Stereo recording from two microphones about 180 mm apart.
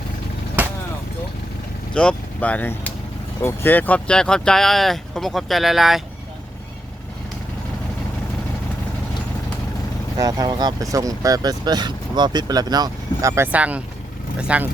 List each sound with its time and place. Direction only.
0.6 s vehicle: 10° right (ahead or behind)
1.9 s speech: 5° left (ahead or behind)
10.2 s speech: 20° right (ahead or behind)